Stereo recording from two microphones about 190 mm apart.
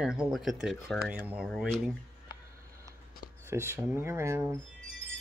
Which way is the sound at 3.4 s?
15° right (ahead or behind).